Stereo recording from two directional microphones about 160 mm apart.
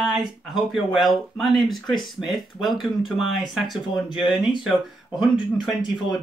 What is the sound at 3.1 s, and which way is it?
Speech, centre (ahead or behind).